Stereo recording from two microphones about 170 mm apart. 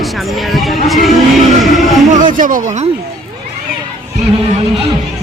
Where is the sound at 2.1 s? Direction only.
50° right (ahead or behind).